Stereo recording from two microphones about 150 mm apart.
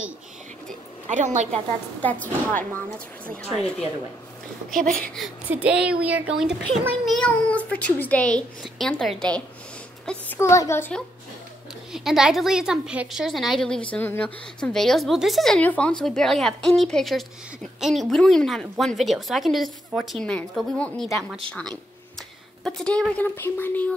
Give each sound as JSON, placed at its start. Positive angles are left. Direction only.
{"t": 1.0, "sound": "a woman's voice", "side_deg": -55}
{"t": 2.0, "sound": "speech", "side_deg": 10}
{"t": 4.6, "sound": "a woman's voice", "side_deg": 5}
{"t": 5.5, "sound": "a woman's voice", "side_deg": -10}
{"t": 7.1, "sound": "speech", "side_deg": 5}
{"t": 11.9, "sound": "a woman's voice", "side_deg": -5}